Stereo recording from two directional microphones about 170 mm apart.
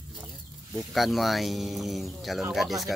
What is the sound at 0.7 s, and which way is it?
Speech, centre (ahead or behind).